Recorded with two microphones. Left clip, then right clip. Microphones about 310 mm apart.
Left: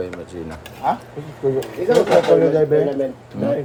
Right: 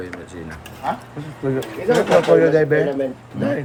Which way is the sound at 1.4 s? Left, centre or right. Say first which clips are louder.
Left 1 dB; right.